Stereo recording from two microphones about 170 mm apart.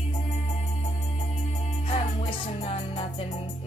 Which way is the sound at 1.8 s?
30° left (ahead or behind).